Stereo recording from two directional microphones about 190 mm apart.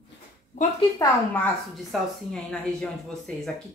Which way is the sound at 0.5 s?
45° left (ahead or behind).